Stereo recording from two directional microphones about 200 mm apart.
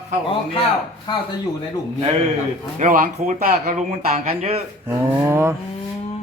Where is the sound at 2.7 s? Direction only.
40° right (ahead or behind).